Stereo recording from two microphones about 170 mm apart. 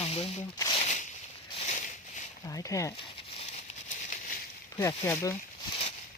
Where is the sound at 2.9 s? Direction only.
30° left (ahead or behind); by 4.4 s 55° left (ahead or behind).